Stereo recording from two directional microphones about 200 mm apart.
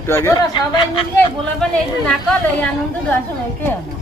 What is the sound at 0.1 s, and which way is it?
Speech, 15° left (ahead or behind).